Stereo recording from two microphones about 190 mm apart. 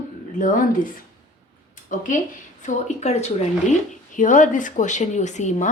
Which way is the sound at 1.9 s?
45° left (ahead or behind).